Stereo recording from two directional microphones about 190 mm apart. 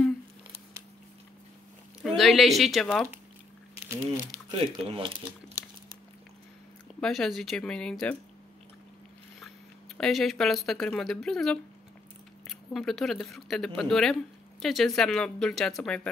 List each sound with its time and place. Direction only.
2.0 s speech: centre (ahead or behind)
4.5 s speech: 30° right (ahead or behind)
7.0 s speech: centre (ahead or behind)
9.9 s speech: centre (ahead or behind)